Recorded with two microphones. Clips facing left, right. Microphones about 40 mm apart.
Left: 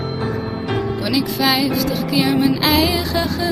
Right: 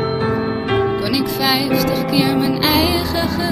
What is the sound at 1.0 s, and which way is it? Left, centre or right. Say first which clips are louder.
Music: even; centre.